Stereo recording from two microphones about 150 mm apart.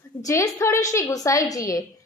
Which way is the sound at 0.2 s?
20° left (ahead or behind).